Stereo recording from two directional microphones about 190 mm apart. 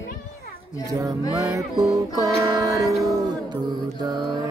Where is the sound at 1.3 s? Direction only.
20° right (ahead or behind).